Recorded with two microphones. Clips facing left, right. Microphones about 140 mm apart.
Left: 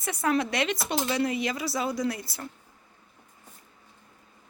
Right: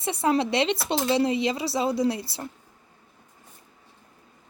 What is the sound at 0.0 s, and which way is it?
Speech, 25° right (ahead or behind).